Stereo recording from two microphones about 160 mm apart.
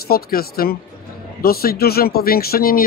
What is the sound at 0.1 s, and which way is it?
Speech, 70° left (ahead or behind).